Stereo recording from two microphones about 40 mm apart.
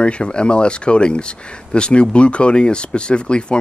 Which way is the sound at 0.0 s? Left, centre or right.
Left.